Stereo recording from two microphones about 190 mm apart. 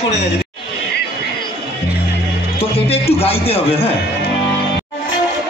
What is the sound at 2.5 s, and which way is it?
A man's voice, 30° left (ahead or behind).